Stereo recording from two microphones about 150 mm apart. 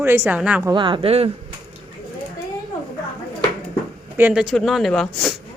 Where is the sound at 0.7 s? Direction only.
35° right (ahead or behind).